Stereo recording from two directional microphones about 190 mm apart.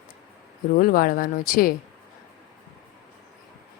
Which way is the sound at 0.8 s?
50° left (ahead or behind).